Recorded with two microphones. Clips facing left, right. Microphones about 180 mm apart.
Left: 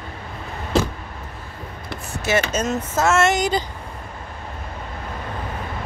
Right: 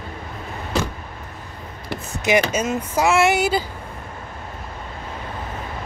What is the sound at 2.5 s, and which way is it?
Speech, 10° right (ahead or behind).